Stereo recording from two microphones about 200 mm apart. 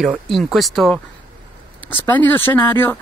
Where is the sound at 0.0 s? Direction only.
Centre (ahead or behind).